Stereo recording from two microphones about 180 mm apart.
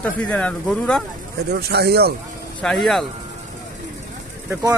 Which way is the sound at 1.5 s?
65° right (ahead or behind).